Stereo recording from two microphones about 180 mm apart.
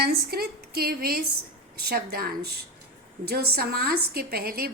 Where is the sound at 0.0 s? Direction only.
60° right (ahead or behind).